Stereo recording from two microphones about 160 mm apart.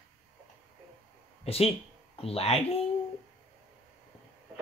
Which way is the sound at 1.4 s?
35° left (ahead or behind).